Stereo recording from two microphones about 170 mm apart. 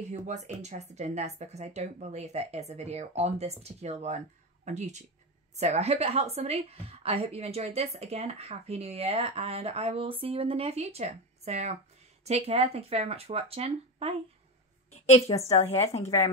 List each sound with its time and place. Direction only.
0.1 s a woman's voice: 45° right (ahead or behind)
14.9 s a woman's voice: 40° left (ahead or behind)